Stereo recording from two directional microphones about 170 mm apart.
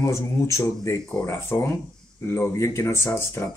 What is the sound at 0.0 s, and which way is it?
Speech, 15° left (ahead or behind).